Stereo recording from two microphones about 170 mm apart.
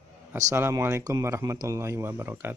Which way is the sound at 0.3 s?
15° right (ahead or behind).